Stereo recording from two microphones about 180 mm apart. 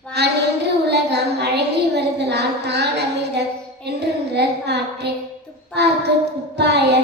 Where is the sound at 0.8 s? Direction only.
65° right (ahead or behind).